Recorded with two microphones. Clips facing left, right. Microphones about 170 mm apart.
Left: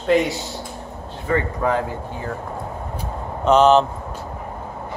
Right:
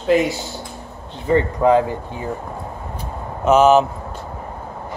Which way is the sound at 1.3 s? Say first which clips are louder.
Right 6 dB; 20° right (ahead or behind).